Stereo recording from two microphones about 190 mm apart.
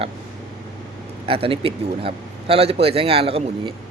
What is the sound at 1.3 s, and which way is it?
Speech, 30° right (ahead or behind).